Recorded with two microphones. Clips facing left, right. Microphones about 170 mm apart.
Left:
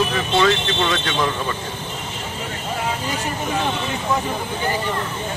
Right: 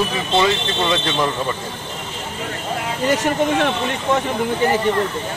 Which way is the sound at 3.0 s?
80° right.